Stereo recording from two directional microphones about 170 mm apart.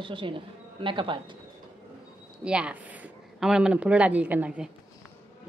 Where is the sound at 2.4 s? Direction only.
5° right (ahead or behind).